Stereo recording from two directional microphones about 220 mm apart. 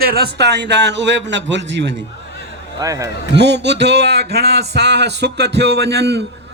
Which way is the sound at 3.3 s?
50° right (ahead or behind).